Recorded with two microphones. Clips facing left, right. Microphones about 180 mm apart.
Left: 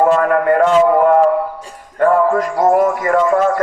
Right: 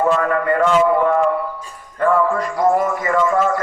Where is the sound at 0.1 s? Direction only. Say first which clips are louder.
Left 5 dB; 45° left (ahead or behind).